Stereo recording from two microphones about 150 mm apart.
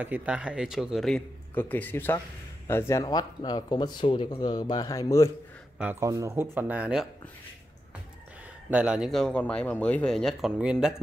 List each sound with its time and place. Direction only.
0.0 s speech: 10° right (ahead or behind); by 5.3 s 20° left (ahead or behind)
5.8 s speech: 15° right (ahead or behind)
8.6 s speech: 5° right (ahead or behind)